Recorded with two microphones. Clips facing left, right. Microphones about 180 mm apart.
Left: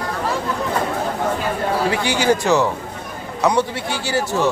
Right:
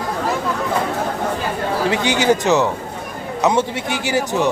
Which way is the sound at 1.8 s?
20° right (ahead or behind).